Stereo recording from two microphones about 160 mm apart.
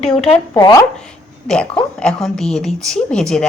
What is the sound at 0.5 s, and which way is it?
Speech, 20° left (ahead or behind).